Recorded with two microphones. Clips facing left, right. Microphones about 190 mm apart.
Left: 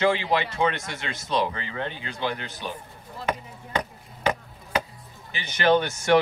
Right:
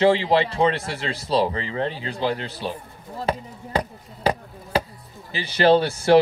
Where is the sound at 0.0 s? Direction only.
30° right (ahead or behind).